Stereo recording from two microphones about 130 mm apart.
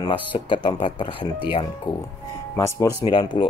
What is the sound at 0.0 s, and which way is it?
Speech, 40° left (ahead or behind).